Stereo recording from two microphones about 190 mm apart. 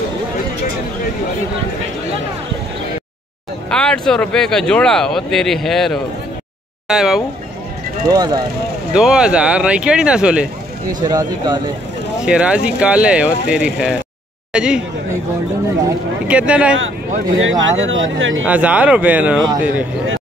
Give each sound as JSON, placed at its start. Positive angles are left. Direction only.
{"t": 3.7, "sound": "speech", "side_deg": 5}
{"t": 8.1, "sound": "speech", "side_deg": -20}
{"t": 8.9, "sound": "speech", "side_deg": -5}
{"t": 11.0, "sound": "speech", "side_deg": -20}
{"t": 12.3, "sound": "speech", "side_deg": -5}
{"t": 16.3, "sound": "speech", "side_deg": -5}
{"t": 17.4, "sound": "speech", "side_deg": -85}
{"t": 18.4, "sound": "speech", "side_deg": -5}